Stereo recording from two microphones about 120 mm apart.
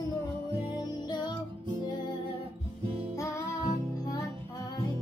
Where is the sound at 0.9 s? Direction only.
35° left (ahead or behind).